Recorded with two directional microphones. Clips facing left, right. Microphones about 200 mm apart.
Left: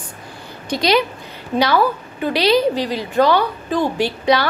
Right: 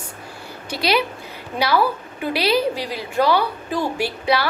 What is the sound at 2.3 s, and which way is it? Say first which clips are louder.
A woman's voice: left 4 dB; 10° right (ahead or behind).